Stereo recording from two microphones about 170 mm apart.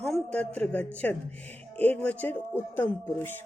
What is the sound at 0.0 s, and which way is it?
A man's voice, 5° left (ahead or behind).